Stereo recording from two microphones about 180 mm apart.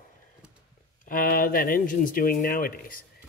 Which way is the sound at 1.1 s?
55° left (ahead or behind).